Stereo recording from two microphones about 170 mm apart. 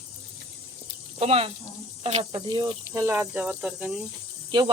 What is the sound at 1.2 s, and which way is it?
Speech, 35° right (ahead or behind).